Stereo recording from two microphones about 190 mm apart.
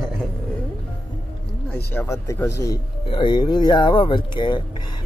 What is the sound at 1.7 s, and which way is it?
Speech, 10° left (ahead or behind).